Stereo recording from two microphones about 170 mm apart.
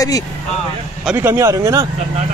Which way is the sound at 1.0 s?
10° right (ahead or behind).